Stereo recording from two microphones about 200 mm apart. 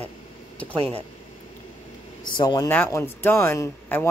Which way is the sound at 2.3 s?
20° left (ahead or behind).